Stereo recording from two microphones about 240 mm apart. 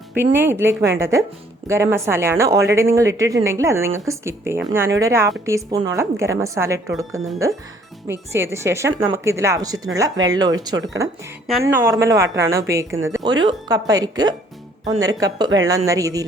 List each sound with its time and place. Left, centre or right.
0.3 s speech: centre